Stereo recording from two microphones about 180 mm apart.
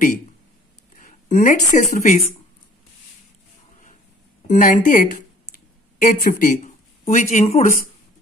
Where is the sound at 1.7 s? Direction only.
40° left (ahead or behind).